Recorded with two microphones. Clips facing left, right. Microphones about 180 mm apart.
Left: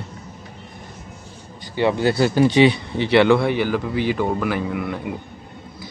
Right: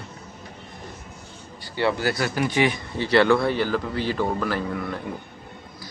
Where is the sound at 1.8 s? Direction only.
20° left (ahead or behind).